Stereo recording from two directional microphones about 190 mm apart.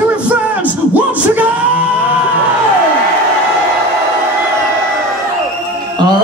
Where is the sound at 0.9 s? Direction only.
10° right (ahead or behind).